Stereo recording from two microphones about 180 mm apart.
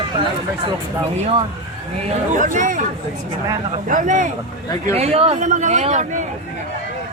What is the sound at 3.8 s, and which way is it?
Speech, 45° right (ahead or behind).